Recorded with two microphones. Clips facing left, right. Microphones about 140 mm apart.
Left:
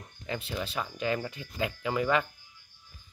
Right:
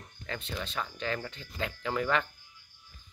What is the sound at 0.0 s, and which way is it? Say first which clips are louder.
Speech: left 3 dB; 5° left (ahead or behind).